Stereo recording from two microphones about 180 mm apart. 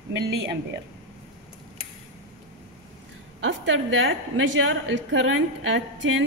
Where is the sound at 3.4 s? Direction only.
90° right.